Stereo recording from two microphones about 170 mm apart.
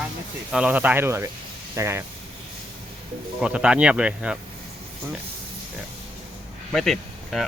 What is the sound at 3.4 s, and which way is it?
Speech, 5° right (ahead or behind).